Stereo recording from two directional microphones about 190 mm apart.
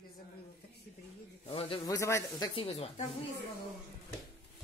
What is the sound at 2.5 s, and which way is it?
Speech, 30° left (ahead or behind).